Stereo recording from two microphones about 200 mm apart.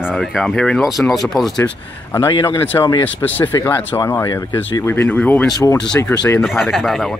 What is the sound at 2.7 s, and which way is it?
Speech, 20° left (ahead or behind).